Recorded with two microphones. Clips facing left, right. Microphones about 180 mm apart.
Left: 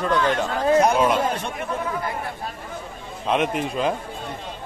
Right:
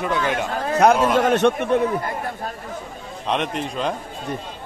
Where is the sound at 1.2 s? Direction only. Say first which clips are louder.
Right 8 dB; 75° right (ahead or behind).